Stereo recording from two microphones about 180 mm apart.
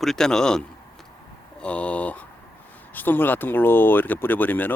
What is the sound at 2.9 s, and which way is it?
Speech, 10° left (ahead or behind).